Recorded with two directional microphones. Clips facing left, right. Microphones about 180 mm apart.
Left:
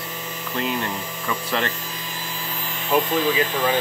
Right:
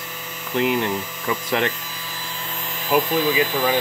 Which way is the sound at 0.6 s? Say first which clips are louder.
Right 5 dB; 15° right (ahead or behind).